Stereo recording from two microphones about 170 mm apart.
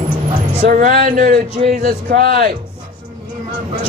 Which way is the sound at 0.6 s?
55° right (ahead or behind).